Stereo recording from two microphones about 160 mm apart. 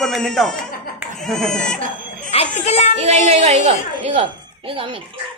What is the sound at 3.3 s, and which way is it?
A woman's voice, 40° right (ahead or behind).